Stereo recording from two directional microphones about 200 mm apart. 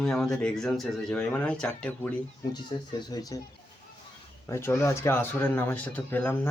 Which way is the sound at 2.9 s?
20° left (ahead or behind).